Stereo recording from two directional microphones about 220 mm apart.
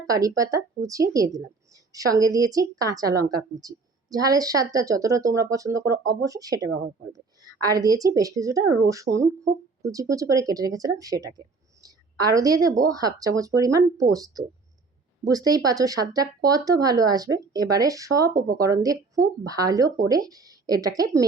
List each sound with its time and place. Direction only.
0.1 s a woman's voice: 15° right (ahead or behind)
7.7 s a woman's voice: 15° right (ahead or behind)